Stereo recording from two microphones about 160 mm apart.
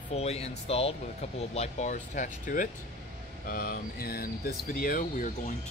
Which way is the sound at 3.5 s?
65° left (ahead or behind).